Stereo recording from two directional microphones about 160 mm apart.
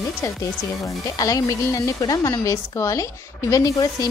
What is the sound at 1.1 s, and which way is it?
A woman's voice, 20° left (ahead or behind).